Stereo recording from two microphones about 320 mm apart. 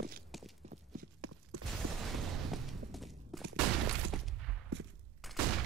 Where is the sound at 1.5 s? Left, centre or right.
Right.